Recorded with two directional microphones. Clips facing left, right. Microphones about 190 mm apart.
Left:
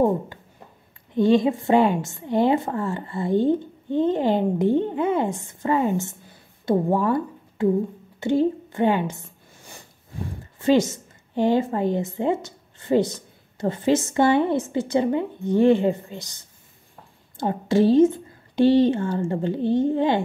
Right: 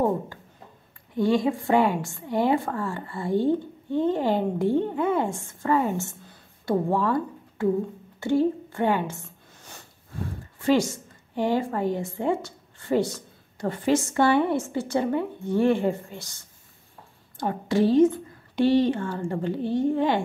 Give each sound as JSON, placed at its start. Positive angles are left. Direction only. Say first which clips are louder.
{"t": 1.1, "sound": "a woman's voice", "louder": "left 4 dB", "side_deg": 20}
{"t": 8.2, "sound": "a sound", "louder": "left 2 dB", "side_deg": 20}
{"t": 10.6, "sound": "a woman's voice", "louder": "left 3 dB", "side_deg": 20}